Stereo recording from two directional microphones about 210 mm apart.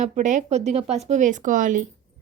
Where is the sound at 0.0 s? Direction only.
35° right (ahead or behind).